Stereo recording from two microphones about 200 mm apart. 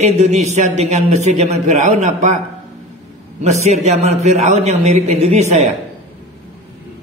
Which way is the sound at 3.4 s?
35° right (ahead or behind).